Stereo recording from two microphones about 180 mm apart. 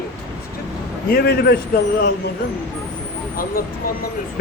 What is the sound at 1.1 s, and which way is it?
Speech, 60° left (ahead or behind).